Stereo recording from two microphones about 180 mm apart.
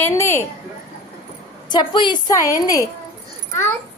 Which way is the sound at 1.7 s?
25° left (ahead or behind).